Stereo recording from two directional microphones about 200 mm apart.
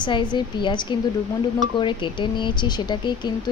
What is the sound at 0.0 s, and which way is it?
A woman's voice, 20° left (ahead or behind).